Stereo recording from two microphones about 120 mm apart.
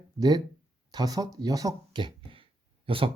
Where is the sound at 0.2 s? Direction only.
35° right (ahead or behind).